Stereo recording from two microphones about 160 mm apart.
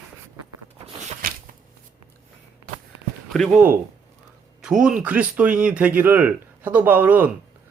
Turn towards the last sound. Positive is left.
turn(degrees=-10)  # may be behind; listen again after turning